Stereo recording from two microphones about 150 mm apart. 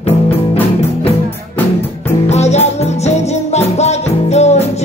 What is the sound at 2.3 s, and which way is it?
Music, 45° left (ahead or behind).